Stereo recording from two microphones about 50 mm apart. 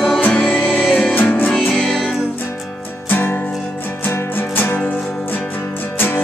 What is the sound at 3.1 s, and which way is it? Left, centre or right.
Music, left.